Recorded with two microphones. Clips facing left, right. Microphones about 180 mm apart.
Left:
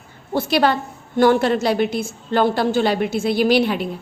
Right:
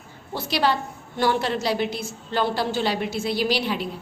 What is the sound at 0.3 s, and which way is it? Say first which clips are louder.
A woman's voice: left 6 dB; 55° left (ahead or behind).